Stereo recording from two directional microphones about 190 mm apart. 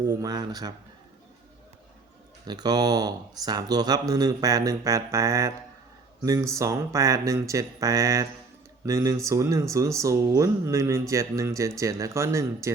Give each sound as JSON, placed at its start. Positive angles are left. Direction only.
{"t": 0.0, "sound": "speech", "side_deg": -20}
{"t": 2.5, "sound": "speech", "side_deg": -20}